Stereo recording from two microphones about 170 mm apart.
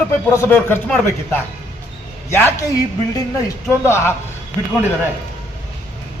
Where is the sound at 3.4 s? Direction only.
15° left (ahead or behind).